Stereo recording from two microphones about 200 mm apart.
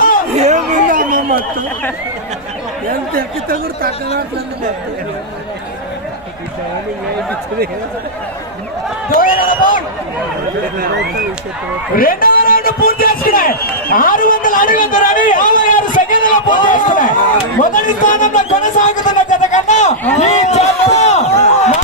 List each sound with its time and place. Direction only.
0.3 s a sound: 35° right (ahead or behind)
3.2 s speech: 45° right (ahead or behind)
9.0 s a man's voice: 45° left (ahead or behind)
11.9 s a man's voice: 45° left (ahead or behind)